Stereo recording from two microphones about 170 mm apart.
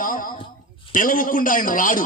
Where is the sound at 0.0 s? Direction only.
55° left (ahead or behind).